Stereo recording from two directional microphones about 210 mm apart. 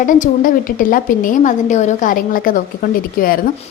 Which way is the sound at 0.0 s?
40° left (ahead or behind).